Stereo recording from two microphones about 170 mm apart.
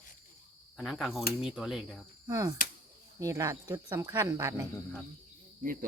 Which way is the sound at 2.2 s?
20° right (ahead or behind).